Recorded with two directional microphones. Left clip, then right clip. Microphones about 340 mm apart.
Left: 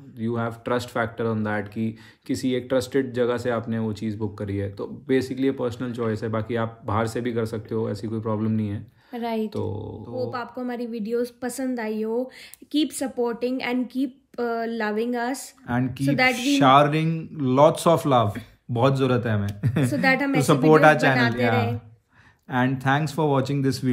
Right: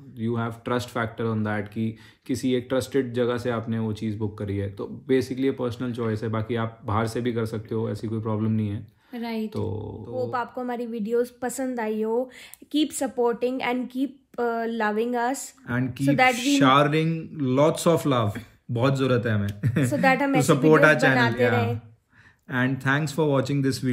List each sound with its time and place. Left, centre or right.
0.2 s speech: centre
15.6 s speech: centre
19.9 s speech: centre
20.7 s speech: centre
22.5 s speech: centre